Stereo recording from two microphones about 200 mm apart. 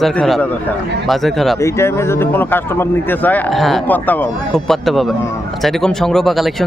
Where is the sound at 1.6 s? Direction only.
15° left (ahead or behind).